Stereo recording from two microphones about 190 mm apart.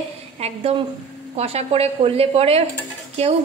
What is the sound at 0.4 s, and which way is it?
A woman's voice, 30° right (ahead or behind).